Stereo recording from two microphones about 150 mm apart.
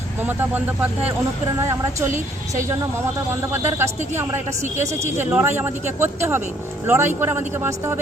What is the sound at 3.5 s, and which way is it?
Speech, 15° right (ahead or behind).